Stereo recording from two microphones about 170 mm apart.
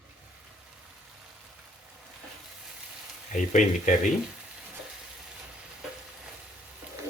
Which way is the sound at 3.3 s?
50° left (ahead or behind).